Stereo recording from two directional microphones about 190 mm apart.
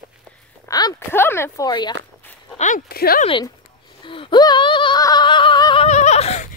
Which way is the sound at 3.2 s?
25° left (ahead or behind).